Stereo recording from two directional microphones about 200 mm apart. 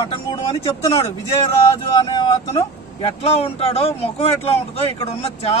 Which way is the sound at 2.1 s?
30° left (ahead or behind).